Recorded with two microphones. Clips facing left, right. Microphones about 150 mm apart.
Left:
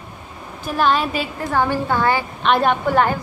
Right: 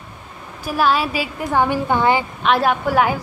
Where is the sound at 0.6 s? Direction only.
5° right (ahead or behind).